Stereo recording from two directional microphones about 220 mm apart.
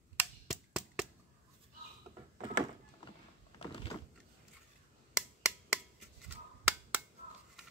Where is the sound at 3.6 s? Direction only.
25° left (ahead or behind).